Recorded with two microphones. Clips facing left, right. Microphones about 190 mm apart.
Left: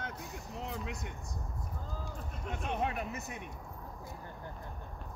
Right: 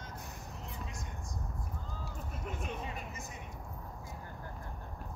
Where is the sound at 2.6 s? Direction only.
65° left (ahead or behind).